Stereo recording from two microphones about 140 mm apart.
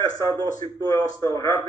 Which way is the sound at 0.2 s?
25° left (ahead or behind).